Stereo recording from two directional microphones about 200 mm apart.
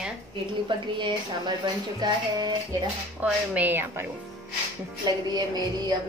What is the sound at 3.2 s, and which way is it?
Speech, 10° right (ahead or behind).